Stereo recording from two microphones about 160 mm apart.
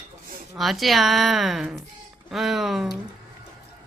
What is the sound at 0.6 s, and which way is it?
Speech, centre (ahead or behind).